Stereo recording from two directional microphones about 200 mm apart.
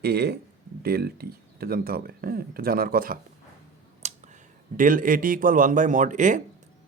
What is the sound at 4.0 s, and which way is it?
Finger snapping, 35° right (ahead or behind).